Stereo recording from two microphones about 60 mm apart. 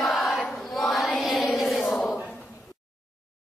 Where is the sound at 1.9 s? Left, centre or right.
Centre.